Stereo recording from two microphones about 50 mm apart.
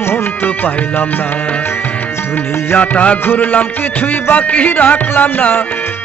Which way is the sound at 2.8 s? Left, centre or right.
Left.